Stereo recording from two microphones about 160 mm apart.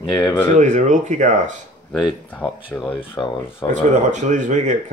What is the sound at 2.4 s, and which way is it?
Speech, 20° left (ahead or behind).